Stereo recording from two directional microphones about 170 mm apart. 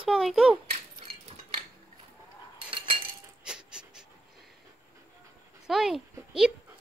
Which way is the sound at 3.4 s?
5° right (ahead or behind).